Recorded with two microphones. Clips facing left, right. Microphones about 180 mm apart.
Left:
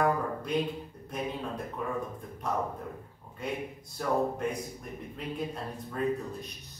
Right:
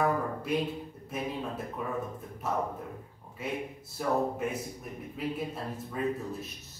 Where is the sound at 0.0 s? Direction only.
5° right (ahead or behind).